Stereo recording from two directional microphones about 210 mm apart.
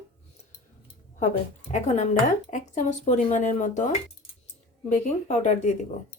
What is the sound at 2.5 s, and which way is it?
Speech, 35° left (ahead or behind).